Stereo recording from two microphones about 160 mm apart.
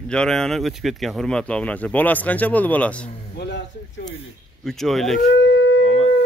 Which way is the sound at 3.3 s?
90° left.